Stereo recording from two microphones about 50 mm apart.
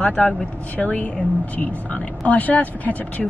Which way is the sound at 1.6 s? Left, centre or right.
Left.